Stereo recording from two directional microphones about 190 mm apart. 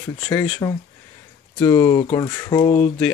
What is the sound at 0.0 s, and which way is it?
Speech, 10° left (ahead or behind).